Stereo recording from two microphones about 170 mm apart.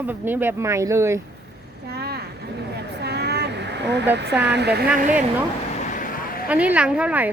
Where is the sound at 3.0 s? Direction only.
75° right (ahead or behind).